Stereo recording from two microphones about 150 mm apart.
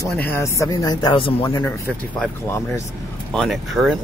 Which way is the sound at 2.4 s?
15° left (ahead or behind).